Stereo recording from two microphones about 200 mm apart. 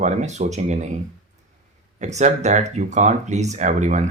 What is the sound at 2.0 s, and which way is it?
Speech, 35° right (ahead or behind).